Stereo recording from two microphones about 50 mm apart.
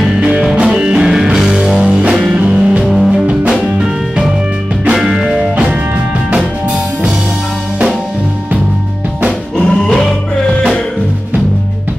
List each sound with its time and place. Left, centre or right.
0.1 s music: centre
1.9 s music: right
2.8 s music: centre
5.0 s music: centre
9.6 s music: centre